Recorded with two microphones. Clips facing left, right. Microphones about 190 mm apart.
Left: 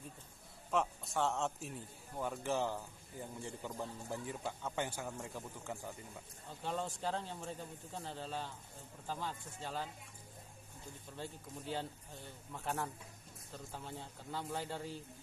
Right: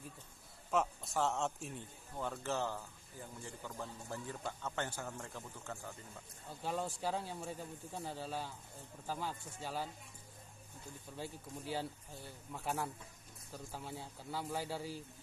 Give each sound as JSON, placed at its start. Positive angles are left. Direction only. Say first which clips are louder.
{"t": 0.7, "sound": "a man's voice", "louder": "even", "side_deg": 0}
{"t": 6.6, "sound": "speech", "louder": "right 1 dB", "side_deg": -10}
{"t": 11.1, "sound": "speech", "louder": "right 1 dB", "side_deg": -10}